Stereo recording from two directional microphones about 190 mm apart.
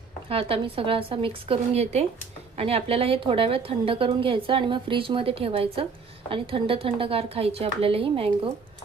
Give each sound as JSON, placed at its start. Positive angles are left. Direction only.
{"t": 0.3, "sound": "a woman's voice", "side_deg": -30}